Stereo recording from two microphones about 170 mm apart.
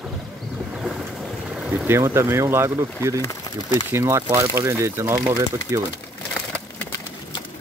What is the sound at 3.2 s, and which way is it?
Speech, 25° left (ahead or behind).